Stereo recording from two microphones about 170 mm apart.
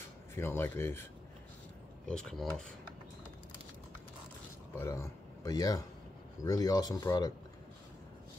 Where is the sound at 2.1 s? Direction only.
5° left (ahead or behind).